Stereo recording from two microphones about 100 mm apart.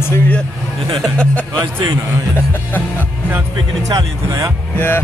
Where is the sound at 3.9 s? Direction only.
35° right (ahead or behind).